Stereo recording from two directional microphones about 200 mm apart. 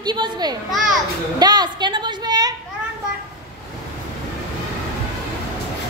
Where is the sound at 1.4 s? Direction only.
20° right (ahead or behind).